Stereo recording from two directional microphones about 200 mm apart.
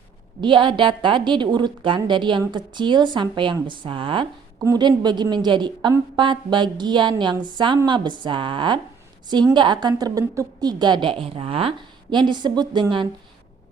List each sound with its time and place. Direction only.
0.4 s a woman's voice: 25° right (ahead or behind)